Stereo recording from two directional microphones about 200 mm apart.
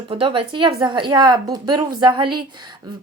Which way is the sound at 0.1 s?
25° right (ahead or behind).